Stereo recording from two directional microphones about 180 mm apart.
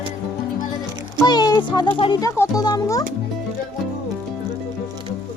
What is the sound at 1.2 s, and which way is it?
Music, 20° left (ahead or behind).